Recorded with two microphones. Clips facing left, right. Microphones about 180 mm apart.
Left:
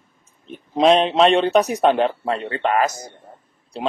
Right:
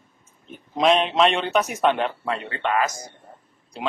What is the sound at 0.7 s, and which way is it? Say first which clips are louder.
Speech: left 4 dB; 30° left (ahead or behind).